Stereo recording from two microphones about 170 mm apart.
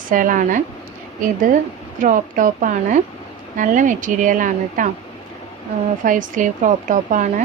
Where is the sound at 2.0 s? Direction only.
50° right (ahead or behind).